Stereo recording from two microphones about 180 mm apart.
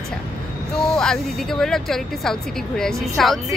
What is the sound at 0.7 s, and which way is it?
Speech, 5° left (ahead or behind).